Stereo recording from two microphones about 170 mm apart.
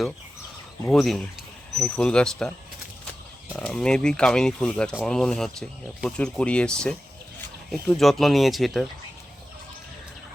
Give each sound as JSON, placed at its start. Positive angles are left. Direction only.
{"t": 0.9, "sound": "speech", "side_deg": 0}
{"t": 3.5, "sound": "speech", "side_deg": 5}